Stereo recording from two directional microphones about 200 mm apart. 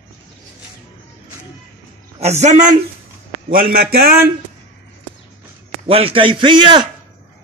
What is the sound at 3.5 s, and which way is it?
Speech, 50° right (ahead or behind).